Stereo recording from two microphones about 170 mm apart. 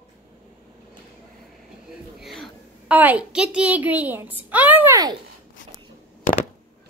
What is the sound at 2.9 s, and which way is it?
A child's voice, 10° right (ahead or behind).